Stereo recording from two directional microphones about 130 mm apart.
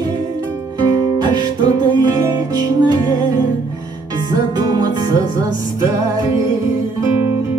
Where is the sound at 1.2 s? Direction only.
35° right (ahead or behind).